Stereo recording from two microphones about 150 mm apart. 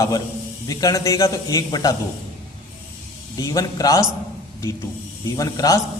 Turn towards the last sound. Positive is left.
turn(degrees=25)  # may be behind; listen again after turning